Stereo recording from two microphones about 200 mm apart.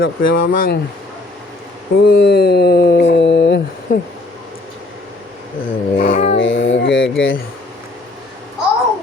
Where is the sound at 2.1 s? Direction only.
50° left (ahead or behind).